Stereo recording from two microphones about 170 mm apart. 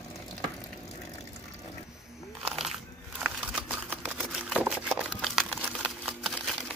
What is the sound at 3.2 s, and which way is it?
Camera, 5° right (ahead or behind).